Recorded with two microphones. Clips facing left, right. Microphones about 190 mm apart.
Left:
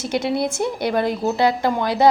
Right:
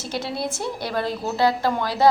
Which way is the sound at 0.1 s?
20° left (ahead or behind).